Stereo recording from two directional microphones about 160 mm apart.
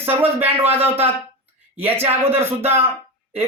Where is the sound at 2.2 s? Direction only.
15° right (ahead or behind).